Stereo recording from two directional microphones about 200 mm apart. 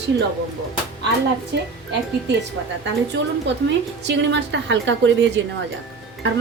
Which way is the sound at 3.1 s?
60° right (ahead or behind).